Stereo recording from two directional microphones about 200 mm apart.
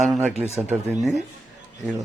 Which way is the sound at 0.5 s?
35° right (ahead or behind).